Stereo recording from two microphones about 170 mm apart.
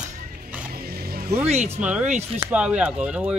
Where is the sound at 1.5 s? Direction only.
40° right (ahead or behind).